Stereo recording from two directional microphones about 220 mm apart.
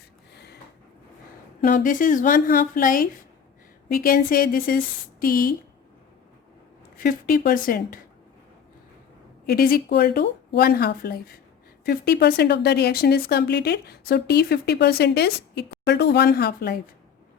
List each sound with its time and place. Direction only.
1.6 s a woman's voice: 35° left (ahead or behind)
7.0 s a woman's voice: 40° left (ahead or behind)
9.5 s speech: 45° left (ahead or behind)